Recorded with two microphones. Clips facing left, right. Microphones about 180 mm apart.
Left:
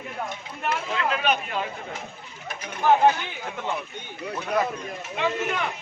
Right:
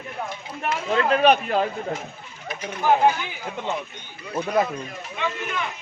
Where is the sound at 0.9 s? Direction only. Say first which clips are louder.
Right 10 dB; 40° right (ahead or behind).